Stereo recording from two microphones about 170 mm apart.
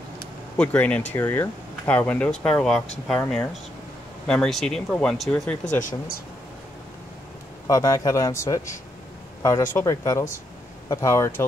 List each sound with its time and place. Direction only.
0.6 s speech: 10° left (ahead or behind)
5.7 s speech: 50° left (ahead or behind)
7.6 s a man's voice: 20° left (ahead or behind)